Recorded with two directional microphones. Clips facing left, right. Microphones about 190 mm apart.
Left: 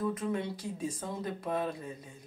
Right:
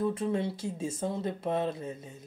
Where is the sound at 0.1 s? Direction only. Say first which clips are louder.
Right 3 dB; 30° right (ahead or behind).